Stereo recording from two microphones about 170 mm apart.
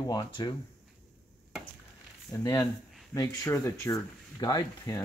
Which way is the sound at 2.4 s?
20° left (ahead or behind).